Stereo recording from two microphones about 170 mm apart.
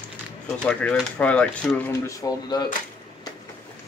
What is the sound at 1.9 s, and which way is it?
Speech, 20° left (ahead or behind).